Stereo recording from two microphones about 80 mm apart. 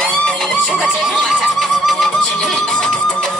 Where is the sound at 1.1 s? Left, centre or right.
Centre.